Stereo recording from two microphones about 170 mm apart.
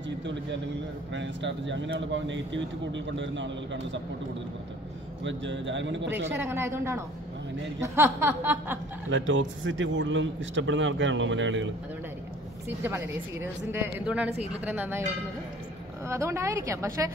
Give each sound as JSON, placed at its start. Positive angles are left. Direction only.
{"t": 0.2, "sound": "a man's voice", "side_deg": -90}
{"t": 5.2, "sound": "a man's voice", "side_deg": -90}
{"t": 6.2, "sound": "speech", "side_deg": -15}
{"t": 9.1, "sound": "a man's voice", "side_deg": -90}
{"t": 12.6, "sound": "speech", "side_deg": -15}
{"t": 16.1, "sound": "speech", "side_deg": -15}